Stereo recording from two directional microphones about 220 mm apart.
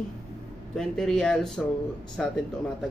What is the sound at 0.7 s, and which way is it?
Speech, centre (ahead or behind).